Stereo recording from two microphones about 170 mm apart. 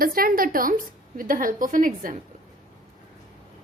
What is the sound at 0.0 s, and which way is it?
A woman's voice, 55° right (ahead or behind).